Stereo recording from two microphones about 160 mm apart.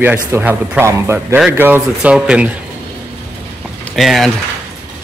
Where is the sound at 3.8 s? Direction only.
Centre (ahead or behind).